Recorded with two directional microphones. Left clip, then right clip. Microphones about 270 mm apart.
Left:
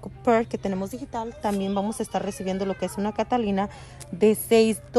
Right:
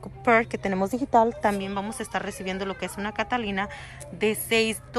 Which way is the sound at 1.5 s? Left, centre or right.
Centre.